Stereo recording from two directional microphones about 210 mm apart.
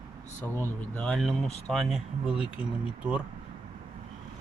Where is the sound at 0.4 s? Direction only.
10° left (ahead or behind).